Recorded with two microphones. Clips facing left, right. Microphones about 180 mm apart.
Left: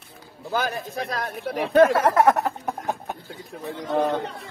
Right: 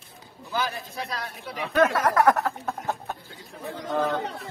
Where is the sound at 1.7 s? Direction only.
30° left (ahead or behind).